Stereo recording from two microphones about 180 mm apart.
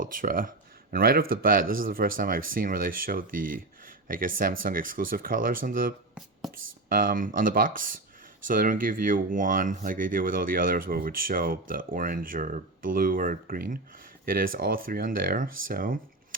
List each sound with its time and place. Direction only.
0.0 s speech: 50° right (ahead or behind)